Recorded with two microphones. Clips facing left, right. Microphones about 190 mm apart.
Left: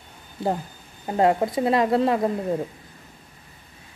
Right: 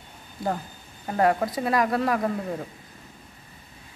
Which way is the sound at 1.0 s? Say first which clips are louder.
Left 2 dB; 25° left (ahead or behind).